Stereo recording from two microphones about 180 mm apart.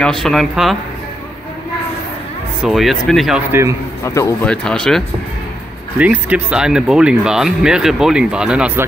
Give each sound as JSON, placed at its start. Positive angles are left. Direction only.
{"t": 0.0, "sound": "speech", "side_deg": 0}
{"t": 2.6, "sound": "speech", "side_deg": 0}
{"t": 4.0, "sound": "speech", "side_deg": 15}
{"t": 4.5, "sound": "speech", "side_deg": 5}
{"t": 5.9, "sound": "speech", "side_deg": -10}